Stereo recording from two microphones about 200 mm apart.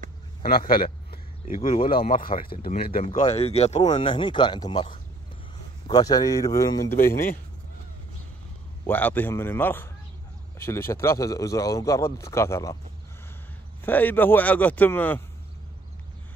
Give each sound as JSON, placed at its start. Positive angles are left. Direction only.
{"t": 0.4, "sound": "a sound", "side_deg": 50}
{"t": 2.1, "sound": "speech", "side_deg": 45}
{"t": 3.2, "sound": "speech", "side_deg": 35}
{"t": 5.9, "sound": "a man's voice", "side_deg": 20}
{"t": 6.9, "sound": "speech", "side_deg": 45}
{"t": 8.8, "sound": "a man's voice", "side_deg": 10}
{"t": 13.8, "sound": "a man's voice", "side_deg": 10}